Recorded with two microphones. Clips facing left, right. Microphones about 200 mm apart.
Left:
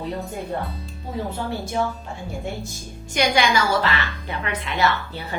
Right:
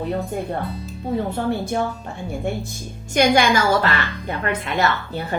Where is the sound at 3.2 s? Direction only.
50° right (ahead or behind).